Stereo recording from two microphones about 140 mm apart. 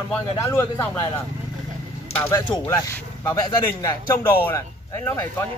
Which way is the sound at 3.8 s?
20° left (ahead or behind).